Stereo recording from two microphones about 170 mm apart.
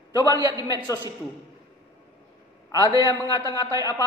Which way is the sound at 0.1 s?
20° left (ahead or behind).